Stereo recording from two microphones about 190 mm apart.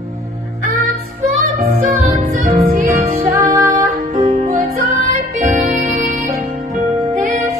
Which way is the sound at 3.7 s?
40° right (ahead or behind).